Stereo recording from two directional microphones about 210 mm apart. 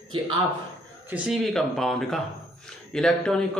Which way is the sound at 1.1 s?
Centre (ahead or behind).